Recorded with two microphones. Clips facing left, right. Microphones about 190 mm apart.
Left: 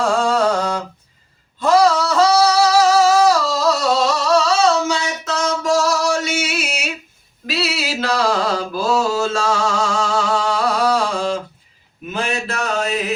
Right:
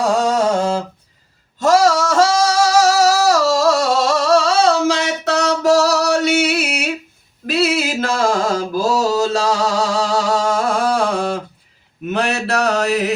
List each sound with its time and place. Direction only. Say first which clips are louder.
0.0 s humming: right 1 dB; 20° right (ahead or behind)
1.5 s a sound: right 1 dB; 45° right (ahead or behind)
2.0 s singing: even; 45° right (ahead or behind)
2.8 s a sound: left 1 dB; 75° right (ahead or behind)
3.6 s music: right 2 dB; 50° right (ahead or behind)
4.9 s music: right 4 dB; 70° right (ahead or behind)
7.4 s mantra: right 6 dB; 50° right (ahead or behind)
12.0 s mantra: right 4 dB; 70° right (ahead or behind)